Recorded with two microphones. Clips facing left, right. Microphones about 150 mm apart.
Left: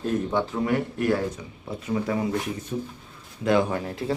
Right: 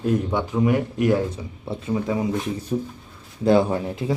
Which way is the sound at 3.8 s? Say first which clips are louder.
Right 3 dB; 20° right (ahead or behind).